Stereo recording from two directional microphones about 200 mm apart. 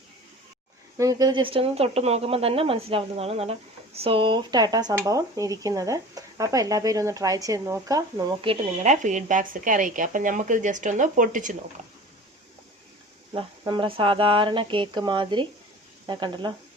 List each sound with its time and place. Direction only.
0.9 s speech: 20° right (ahead or behind); by 11.5 s 40° right (ahead or behind)
13.3 s speech: 25° right (ahead or behind)